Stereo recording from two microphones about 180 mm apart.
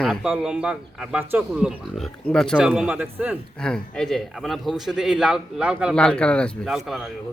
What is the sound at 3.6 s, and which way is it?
Speech, 5° left (ahead or behind).